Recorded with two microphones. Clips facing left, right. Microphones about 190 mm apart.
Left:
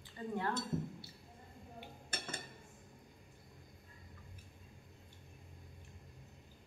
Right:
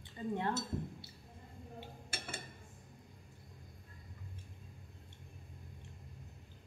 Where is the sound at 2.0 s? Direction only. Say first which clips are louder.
Left 2 dB; 10° right (ahead or behind).